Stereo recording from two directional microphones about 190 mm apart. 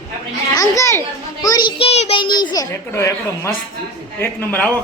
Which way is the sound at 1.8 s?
30° left (ahead or behind).